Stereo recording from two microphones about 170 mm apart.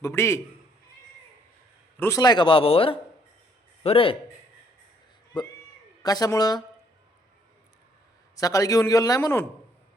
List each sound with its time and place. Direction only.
0.0 s a man's voice: 15° left (ahead or behind)
2.0 s a man's voice: 20° left (ahead or behind)
6.0 s speech: 20° left (ahead or behind)
8.4 s speech: 20° left (ahead or behind)